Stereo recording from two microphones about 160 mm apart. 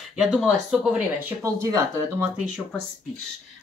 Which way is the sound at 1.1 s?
20° right (ahead or behind).